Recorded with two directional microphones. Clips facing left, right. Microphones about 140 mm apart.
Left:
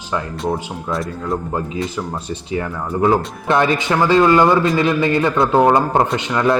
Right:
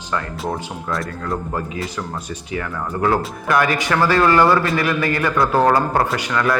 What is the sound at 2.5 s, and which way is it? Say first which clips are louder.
A man's voice: left 3 dB; 25° left (ahead or behind).